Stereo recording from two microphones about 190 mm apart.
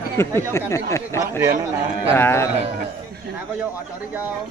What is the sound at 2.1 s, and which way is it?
Speech, 10° left (ahead or behind).